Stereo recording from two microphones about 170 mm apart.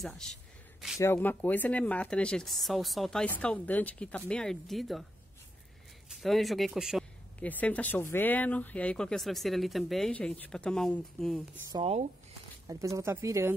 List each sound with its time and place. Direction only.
0.0 s a sound: centre (ahead or behind)
0.9 s speech: 15° left (ahead or behind)
6.0 s speech: centre (ahead or behind)
7.3 s speech: 10° left (ahead or behind)
11.8 s speech: 40° right (ahead or behind)
12.6 s speech: 20° right (ahead or behind)